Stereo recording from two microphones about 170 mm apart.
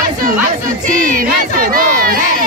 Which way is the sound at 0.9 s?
55° right (ahead or behind).